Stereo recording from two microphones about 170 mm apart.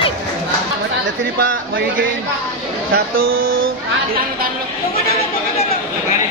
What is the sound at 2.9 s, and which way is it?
Speech, 60° right (ahead or behind).